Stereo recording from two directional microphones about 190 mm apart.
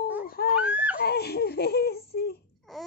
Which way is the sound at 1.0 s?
55° left (ahead or behind).